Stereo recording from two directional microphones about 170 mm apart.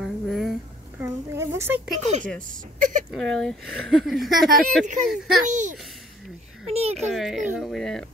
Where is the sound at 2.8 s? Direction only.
50° right (ahead or behind).